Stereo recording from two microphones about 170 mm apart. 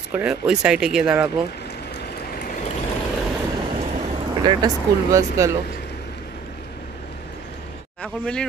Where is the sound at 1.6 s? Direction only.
75° left (ahead or behind).